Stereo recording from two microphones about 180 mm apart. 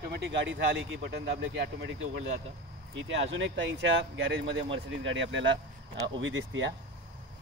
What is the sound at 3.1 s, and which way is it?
Speech, 90° right.